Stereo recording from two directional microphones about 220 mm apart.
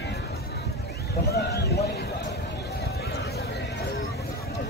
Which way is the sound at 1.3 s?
50° left (ahead or behind).